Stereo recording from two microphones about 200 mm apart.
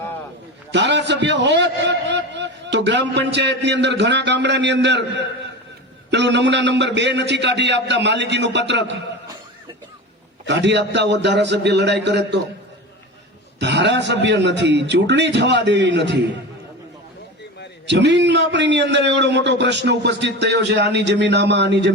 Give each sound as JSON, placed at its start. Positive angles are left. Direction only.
{"t": 0.7, "sound": "a man's voice", "side_deg": -60}
{"t": 10.4, "sound": "a man's voice", "side_deg": -60}
{"t": 13.6, "sound": "a man's voice", "side_deg": -60}
{"t": 17.8, "sound": "a man's voice", "side_deg": -60}